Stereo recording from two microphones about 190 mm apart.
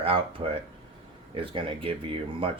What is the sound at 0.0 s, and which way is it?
Speech, 30° right (ahead or behind).